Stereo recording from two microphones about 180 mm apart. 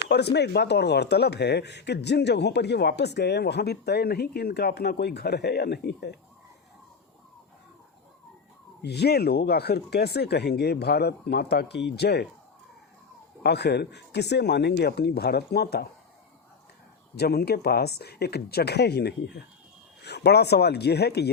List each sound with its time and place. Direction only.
0.1 s speech: 70° left (ahead or behind)
8.8 s speech: 65° left (ahead or behind)
13.4 s speech: 70° left (ahead or behind)
17.2 s speech: 65° left (ahead or behind)